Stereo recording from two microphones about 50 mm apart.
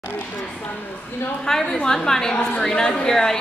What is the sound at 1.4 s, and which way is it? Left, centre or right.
A woman's voice, centre.